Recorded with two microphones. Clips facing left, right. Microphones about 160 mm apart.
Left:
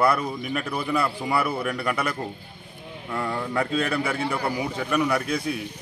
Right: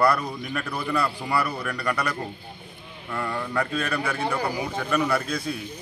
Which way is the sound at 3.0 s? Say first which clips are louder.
Left 1 dB; 5° left (ahead or behind).